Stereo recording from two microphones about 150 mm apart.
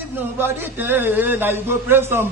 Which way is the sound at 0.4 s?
15° right (ahead or behind).